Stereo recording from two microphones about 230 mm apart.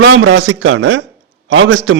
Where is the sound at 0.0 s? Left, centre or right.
Right.